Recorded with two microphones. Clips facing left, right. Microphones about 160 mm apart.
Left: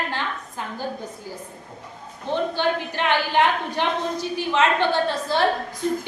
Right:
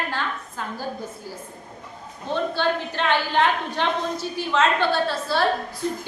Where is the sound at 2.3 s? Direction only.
15° left (ahead or behind).